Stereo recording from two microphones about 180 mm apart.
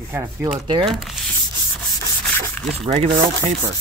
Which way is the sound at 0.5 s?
25° right (ahead or behind).